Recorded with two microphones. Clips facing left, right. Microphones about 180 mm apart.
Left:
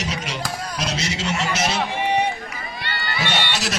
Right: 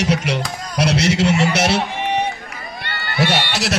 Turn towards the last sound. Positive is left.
turn(degrees=-70)  # may be behind; listen again after turning